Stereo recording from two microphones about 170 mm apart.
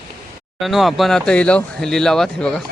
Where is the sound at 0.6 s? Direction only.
Centre (ahead or behind).